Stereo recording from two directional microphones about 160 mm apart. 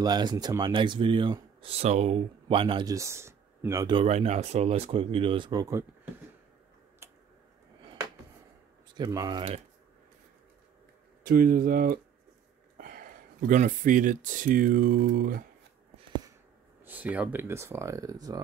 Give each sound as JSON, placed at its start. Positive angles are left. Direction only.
{"t": 0.0, "sound": "speech", "side_deg": -25}
{"t": 2.4, "sound": "speech", "side_deg": -30}
{"t": 4.0, "sound": "speech", "side_deg": -40}
{"t": 7.0, "sound": "a sound", "side_deg": -15}
{"t": 8.9, "sound": "speech", "side_deg": -25}
{"t": 11.2, "sound": "a man's voice", "side_deg": -65}
{"t": 16.8, "sound": "speech", "side_deg": -10}